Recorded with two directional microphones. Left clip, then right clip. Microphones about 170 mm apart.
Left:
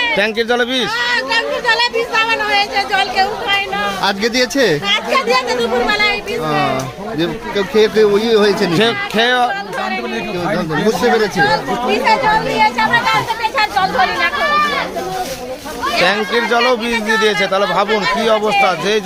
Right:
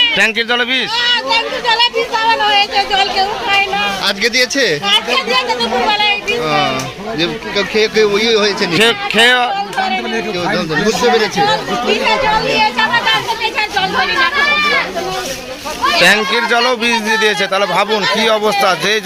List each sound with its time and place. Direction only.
0.2 s speech: 5° right (ahead or behind)
1.3 s chatter: 45° left (ahead or behind)
1.8 s speech: 15° left (ahead or behind)
4.0 s speech: 60° left (ahead or behind)
5.9 s speech: 20° left (ahead or behind)
7.2 s speech: 60° left (ahead or behind)
8.7 s speech: centre (ahead or behind)
10.5 s speech: 75° left (ahead or behind)
12.0 s speech: centre (ahead or behind)
16.0 s speech: 10° right (ahead or behind)